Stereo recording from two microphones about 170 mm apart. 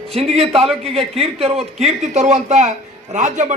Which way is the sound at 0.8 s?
35° right (ahead or behind).